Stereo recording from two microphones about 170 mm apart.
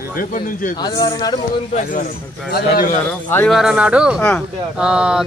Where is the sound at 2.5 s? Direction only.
60° left (ahead or behind).